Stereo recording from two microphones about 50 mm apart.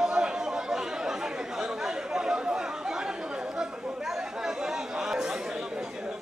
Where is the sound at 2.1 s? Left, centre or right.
Centre.